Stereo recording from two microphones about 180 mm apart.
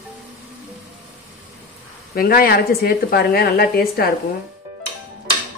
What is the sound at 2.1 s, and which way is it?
A woman's voice, 55° left (ahead or behind).